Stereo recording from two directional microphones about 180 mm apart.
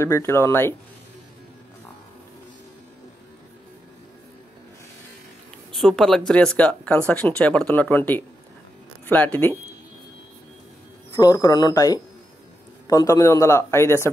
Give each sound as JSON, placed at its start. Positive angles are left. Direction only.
{"t": 0.0, "sound": "speech", "side_deg": 15}
{"t": 5.7, "sound": "speech", "side_deg": 0}
{"t": 11.1, "sound": "speech", "side_deg": 20}